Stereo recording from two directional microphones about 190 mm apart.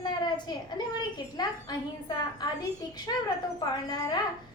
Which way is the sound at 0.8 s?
20° left (ahead or behind).